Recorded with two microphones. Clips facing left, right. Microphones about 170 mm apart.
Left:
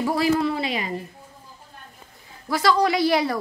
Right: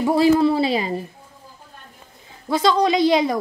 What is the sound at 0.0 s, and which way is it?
Speech, 25° right (ahead or behind).